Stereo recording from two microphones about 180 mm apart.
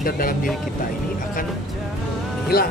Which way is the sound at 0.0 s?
50° left (ahead or behind).